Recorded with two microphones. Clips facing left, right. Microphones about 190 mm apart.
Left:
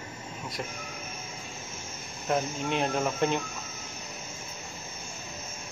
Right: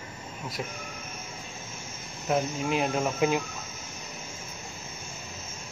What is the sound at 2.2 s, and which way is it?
Speech, 5° right (ahead or behind).